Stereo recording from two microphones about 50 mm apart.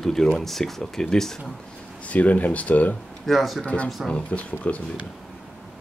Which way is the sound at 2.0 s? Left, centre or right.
Left.